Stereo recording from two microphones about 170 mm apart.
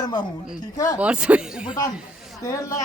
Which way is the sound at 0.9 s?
5° right (ahead or behind).